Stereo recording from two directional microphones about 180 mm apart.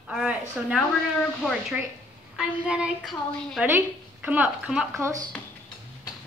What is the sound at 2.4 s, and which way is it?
A woman's voice, 5° right (ahead or behind).